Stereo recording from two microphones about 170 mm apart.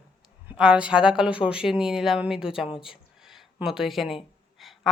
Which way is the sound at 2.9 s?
5° right (ahead or behind).